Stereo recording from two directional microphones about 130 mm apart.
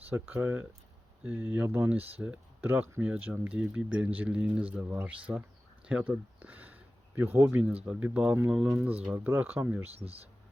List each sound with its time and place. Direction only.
0.1 s speech: 15° right (ahead or behind)